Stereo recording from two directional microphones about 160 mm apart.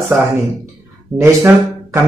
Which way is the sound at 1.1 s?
15° right (ahead or behind).